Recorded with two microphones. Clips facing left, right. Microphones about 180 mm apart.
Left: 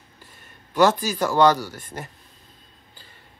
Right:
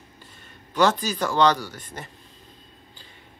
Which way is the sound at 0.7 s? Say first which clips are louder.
Left 2 dB; 10° left (ahead or behind).